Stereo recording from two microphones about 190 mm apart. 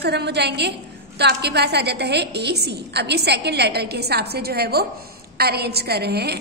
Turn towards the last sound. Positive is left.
turn(degrees=-60)  # may be behind; listen again after turning